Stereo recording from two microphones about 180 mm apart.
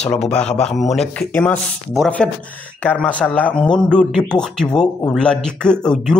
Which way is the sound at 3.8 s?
5° left (ahead or behind).